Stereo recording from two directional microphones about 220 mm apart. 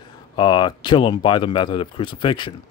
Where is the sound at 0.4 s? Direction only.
20° left (ahead or behind).